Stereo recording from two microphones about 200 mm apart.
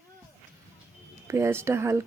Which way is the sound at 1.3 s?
15° right (ahead or behind).